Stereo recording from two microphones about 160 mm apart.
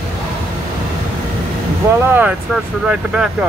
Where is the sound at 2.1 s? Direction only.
5° right (ahead or behind).